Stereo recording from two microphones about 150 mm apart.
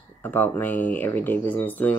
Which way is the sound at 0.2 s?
10° left (ahead or behind).